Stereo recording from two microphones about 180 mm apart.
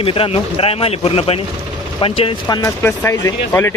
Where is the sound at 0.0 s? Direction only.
30° left (ahead or behind).